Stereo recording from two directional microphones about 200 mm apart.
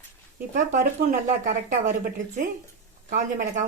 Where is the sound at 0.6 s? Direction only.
40° right (ahead or behind).